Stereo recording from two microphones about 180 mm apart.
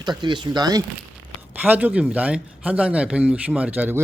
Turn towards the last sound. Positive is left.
turn(degrees=-10)  # may be behind; listen again after turning